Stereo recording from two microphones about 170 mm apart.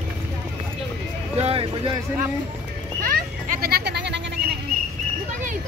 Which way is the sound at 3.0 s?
60° right (ahead or behind).